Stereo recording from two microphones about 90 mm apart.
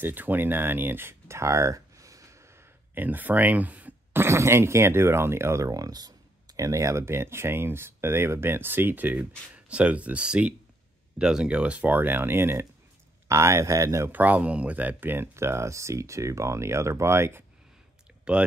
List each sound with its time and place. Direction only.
0.0 s speech: 20° right (ahead or behind); by 14.1 s 35° right (ahead or behind)
14.1 s speech: 20° right (ahead or behind)